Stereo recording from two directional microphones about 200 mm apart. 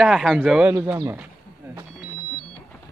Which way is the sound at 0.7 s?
10° right (ahead or behind).